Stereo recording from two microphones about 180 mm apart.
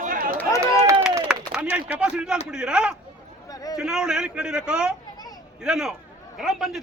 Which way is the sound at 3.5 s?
20° left (ahead or behind).